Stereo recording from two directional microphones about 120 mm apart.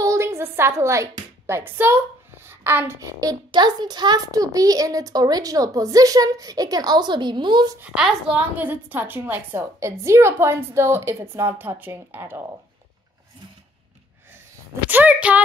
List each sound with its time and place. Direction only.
0.0 s a sound: 25° right (ahead or behind)
1.5 s a woman's voice: 20° right (ahead or behind)
3.0 s a child's voice: 30° right (ahead or behind)
7.8 s a woman's voice: 5° right (ahead or behind)
14.9 s a woman's voice: 15° right (ahead or behind)